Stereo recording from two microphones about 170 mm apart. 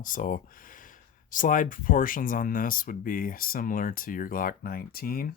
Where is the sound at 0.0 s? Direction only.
50° left (ahead or behind).